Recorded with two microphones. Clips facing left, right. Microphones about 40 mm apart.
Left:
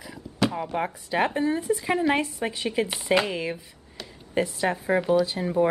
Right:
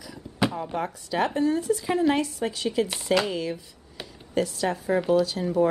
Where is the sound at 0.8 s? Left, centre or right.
Left.